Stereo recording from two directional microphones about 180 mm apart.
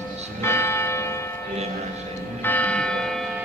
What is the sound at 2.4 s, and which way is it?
Church bell, 10° left (ahead or behind).